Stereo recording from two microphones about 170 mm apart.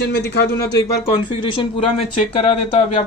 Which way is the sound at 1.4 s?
30° left (ahead or behind).